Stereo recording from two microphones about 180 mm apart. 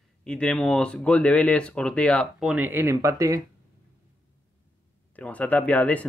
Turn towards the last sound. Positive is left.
turn(degrees=10)  # may be behind; listen again after turning